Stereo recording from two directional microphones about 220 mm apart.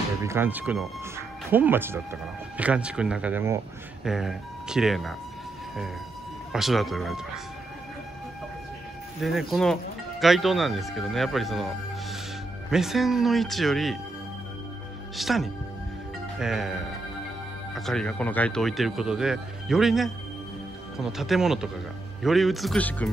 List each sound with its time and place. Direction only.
0.2 s speech: 10° right (ahead or behind)
6.5 s speech: centre (ahead or behind)
9.2 s speech: centre (ahead or behind)
15.1 s speech: centre (ahead or behind)
17.7 s speech: centre (ahead or behind)